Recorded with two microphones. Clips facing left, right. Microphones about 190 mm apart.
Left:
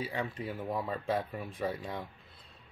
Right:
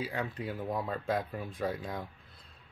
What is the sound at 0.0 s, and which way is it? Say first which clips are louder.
Speech: even; centre (ahead or behind).